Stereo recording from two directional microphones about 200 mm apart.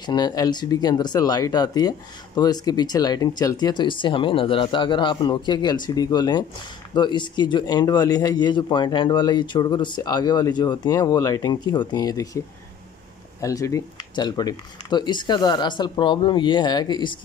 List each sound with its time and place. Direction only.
0.0 s speech: 20° left (ahead or behind)
13.4 s speech: 15° left (ahead or behind)